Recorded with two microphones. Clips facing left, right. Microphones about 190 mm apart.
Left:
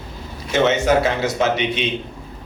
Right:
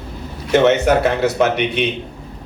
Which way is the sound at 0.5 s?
60° right (ahead or behind).